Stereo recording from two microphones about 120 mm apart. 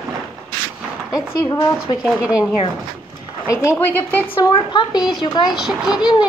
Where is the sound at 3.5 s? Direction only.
25° left (ahead or behind).